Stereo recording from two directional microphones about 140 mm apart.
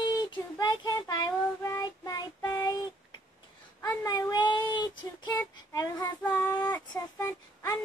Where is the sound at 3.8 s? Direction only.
25° left (ahead or behind).